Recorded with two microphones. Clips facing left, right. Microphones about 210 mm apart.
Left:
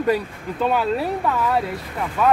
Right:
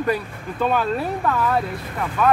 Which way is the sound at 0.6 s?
10° left (ahead or behind).